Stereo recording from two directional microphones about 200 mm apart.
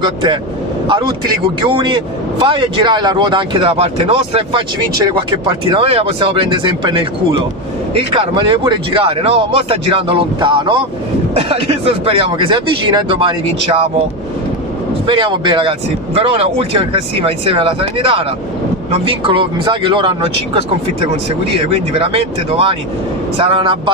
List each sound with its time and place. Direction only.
0.0 s a man's voice: 25° right (ahead or behind)
15.0 s a man's voice: 25° right (ahead or behind)